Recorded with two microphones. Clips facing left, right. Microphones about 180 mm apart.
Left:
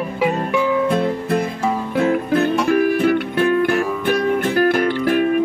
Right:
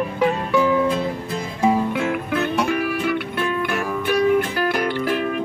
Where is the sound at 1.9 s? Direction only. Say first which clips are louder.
Left 5 dB; 35° left (ahead or behind).